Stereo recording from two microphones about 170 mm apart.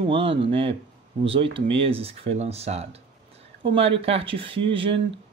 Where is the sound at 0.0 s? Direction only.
30° right (ahead or behind).